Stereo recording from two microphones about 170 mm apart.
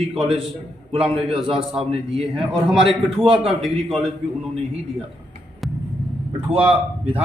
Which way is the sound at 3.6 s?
Centre (ahead or behind).